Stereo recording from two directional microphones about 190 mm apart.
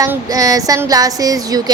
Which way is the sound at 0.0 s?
20° right (ahead or behind).